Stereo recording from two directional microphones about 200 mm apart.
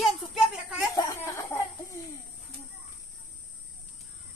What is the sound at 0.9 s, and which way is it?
Speech, 15° left (ahead or behind).